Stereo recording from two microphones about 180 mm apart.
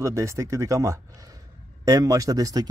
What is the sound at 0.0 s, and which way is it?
Speech, 15° right (ahead or behind).